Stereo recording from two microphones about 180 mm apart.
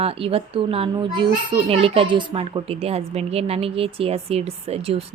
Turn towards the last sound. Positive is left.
turn(degrees=-35)  # may be behind; listen again after turning